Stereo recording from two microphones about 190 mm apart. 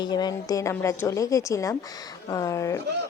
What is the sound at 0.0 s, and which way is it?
A woman's voice, 20° left (ahead or behind).